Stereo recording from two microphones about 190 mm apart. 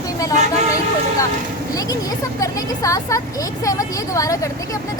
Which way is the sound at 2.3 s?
15° left (ahead or behind).